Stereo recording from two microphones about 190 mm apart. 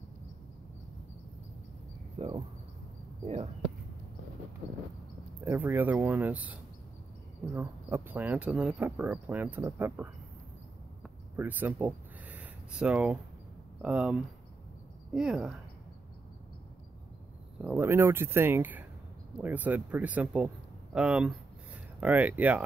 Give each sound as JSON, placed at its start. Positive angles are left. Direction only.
{"t": 2.2, "sound": "cricket", "side_deg": -35}
{"t": 3.3, "sound": "speech", "side_deg": -35}
{"t": 5.4, "sound": "speech", "side_deg": -10}
{"t": 11.3, "sound": "speech", "side_deg": -10}
{"t": 17.6, "sound": "speech", "side_deg": -5}